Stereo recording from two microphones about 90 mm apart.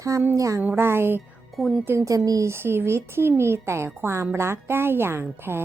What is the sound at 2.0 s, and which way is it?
Speech, 40° right (ahead or behind).